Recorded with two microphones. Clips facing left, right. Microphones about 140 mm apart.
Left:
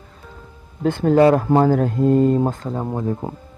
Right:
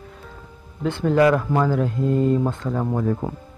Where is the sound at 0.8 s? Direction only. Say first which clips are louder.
Left 4 dB; 45° left (ahead or behind).